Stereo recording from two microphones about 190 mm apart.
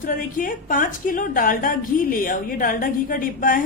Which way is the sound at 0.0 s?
45° left (ahead or behind).